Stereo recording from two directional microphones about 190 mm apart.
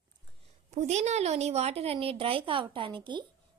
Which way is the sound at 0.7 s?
35° right (ahead or behind).